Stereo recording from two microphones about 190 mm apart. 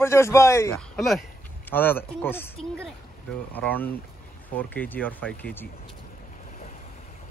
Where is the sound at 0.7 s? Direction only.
Centre (ahead or behind).